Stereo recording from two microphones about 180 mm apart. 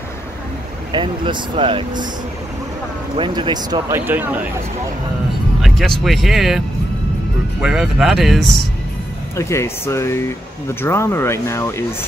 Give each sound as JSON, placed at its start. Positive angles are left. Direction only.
{"t": 0.9, "sound": "speech", "side_deg": -25}
{"t": 3.2, "sound": "speech", "side_deg": -25}
{"t": 4.0, "sound": "speech", "side_deg": -10}
{"t": 5.6, "sound": "speech", "side_deg": 0}
{"t": 7.6, "sound": "speech", "side_deg": -5}
{"t": 9.4, "sound": "speech", "side_deg": 15}